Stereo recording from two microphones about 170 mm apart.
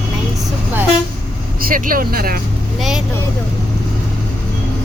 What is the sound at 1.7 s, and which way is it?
Speech, 55° right (ahead or behind).